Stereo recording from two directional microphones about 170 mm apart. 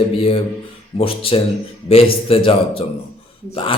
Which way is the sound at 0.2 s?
35° left (ahead or behind).